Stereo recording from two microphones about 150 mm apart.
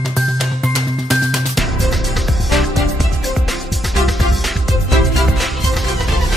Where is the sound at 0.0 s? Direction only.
Centre (ahead or behind).